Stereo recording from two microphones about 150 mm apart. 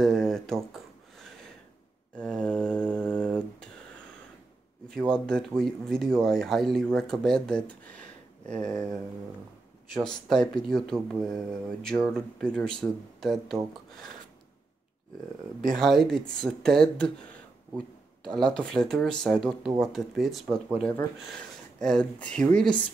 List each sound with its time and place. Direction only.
0.0 s a sound: centre (ahead or behind)
2.1 s mantra: 5° left (ahead or behind)
4.8 s speech: 5° left (ahead or behind)
9.9 s speech: centre (ahead or behind)
15.7 s speech: centre (ahead or behind)
18.2 s speech: 5° left (ahead or behind)